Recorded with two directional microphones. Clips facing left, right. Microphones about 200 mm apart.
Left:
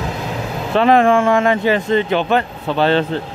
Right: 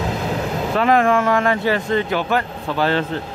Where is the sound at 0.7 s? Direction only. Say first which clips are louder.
Left 4 dB; 25° left (ahead or behind).